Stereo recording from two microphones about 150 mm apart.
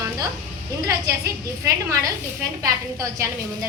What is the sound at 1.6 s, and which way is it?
A woman's voice, 20° right (ahead or behind).